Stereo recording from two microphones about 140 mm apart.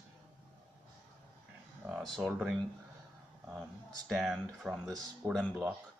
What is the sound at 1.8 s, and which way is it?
Speech, 5° right (ahead or behind).